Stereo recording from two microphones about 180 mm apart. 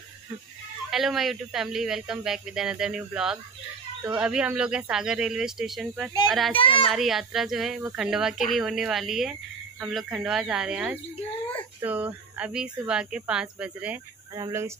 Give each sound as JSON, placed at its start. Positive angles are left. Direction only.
{"t": 0.8, "sound": "speech", "side_deg": 0}
{"t": 6.5, "sound": "a child's voice", "side_deg": 30}
{"t": 6.9, "sound": "speech", "side_deg": 0}